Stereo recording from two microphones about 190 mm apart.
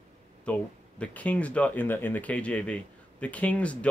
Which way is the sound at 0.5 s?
5° left (ahead or behind).